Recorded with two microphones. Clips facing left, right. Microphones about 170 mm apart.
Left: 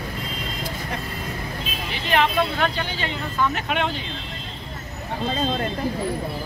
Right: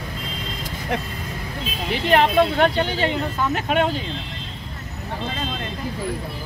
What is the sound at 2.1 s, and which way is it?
Speech, 50° right (ahead or behind).